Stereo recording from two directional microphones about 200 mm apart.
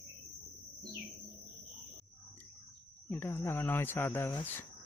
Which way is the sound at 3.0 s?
10° left (ahead or behind).